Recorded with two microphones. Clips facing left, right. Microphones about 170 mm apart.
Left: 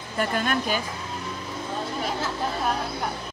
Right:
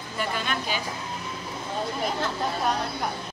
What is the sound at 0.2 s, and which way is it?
Speech, 50° left (ahead or behind).